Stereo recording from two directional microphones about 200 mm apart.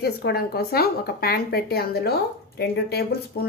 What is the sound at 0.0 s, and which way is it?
Speech, 55° left (ahead or behind).